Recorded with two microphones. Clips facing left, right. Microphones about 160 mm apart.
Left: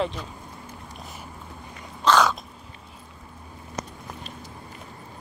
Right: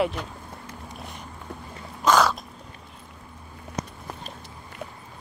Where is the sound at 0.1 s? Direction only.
70° right (ahead or behind).